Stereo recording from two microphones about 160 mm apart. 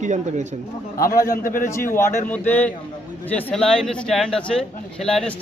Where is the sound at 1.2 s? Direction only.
60° left (ahead or behind).